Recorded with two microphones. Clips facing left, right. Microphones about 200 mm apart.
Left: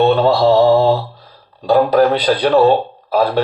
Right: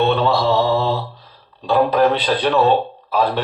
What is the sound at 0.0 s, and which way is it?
Mantra, 40° left (ahead or behind).